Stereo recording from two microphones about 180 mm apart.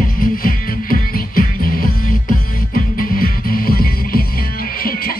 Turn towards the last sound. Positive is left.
turn(degrees=55)  # may be behind; listen again after turning